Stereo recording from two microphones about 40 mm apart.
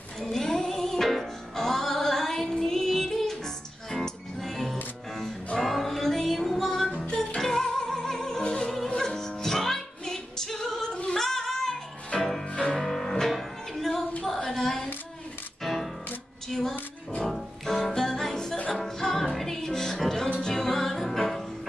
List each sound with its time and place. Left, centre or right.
0.2 s music: centre
8.6 s music: centre
11.1 s singing: centre
12.2 s music: centre
12.4 s music: left
12.7 s music: centre
14.5 s child singing: centre
15.6 s music: centre
16.4 s a sound: centre
17.2 s music: centre